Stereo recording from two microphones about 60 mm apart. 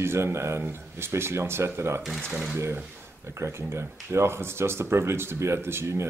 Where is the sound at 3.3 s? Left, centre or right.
Right.